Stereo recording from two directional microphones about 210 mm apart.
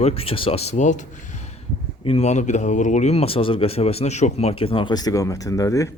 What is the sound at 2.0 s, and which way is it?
Speech, 30° left (ahead or behind).